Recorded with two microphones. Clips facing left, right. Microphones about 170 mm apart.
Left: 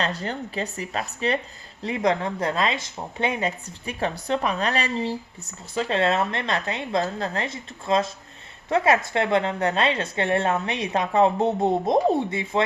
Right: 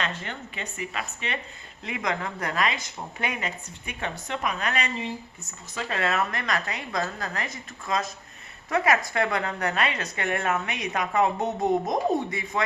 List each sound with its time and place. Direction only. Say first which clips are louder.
0.0 s speech: left 5 dB; 35° left (ahead or behind)